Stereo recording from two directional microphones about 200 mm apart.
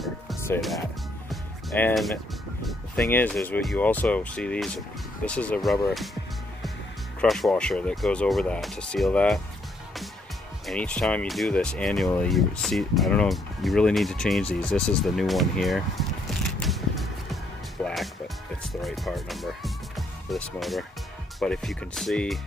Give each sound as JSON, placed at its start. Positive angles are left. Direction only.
{"t": 0.6, "sound": "speech", "side_deg": 0}
{"t": 1.3, "sound": "music", "side_deg": 5}
{"t": 2.6, "sound": "speech", "side_deg": 5}
{"t": 7.2, "sound": "speech", "side_deg": 0}
{"t": 10.7, "sound": "speech", "side_deg": 5}
{"t": 16.3, "sound": "music", "side_deg": 0}
{"t": 18.6, "sound": "speech", "side_deg": 0}